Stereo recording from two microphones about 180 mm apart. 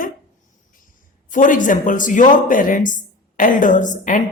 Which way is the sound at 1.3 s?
45° left (ahead or behind).